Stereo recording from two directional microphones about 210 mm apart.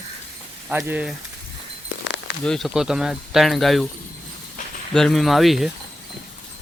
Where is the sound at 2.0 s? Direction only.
55° left (ahead or behind).